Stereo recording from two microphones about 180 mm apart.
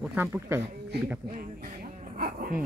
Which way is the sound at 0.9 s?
65° right (ahead or behind).